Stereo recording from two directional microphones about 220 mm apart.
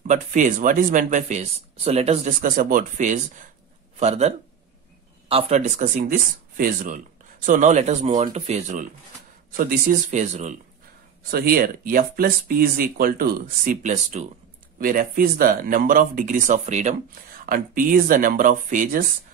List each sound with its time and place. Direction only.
0.0 s speech: 35° right (ahead or behind)
5.3 s speech: 25° right (ahead or behind)